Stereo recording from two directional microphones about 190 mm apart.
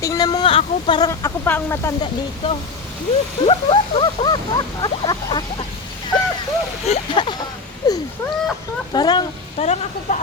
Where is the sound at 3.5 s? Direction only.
25° left (ahead or behind).